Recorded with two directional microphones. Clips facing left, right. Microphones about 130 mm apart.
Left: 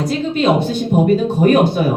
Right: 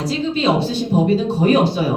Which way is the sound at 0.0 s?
50° left (ahead or behind).